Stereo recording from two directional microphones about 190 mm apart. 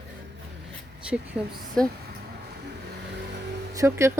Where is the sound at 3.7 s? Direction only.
15° right (ahead or behind).